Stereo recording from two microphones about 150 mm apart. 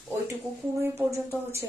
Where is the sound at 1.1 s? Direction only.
15° right (ahead or behind).